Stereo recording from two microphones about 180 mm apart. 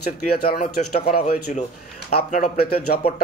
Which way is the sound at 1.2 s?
40° left (ahead or behind).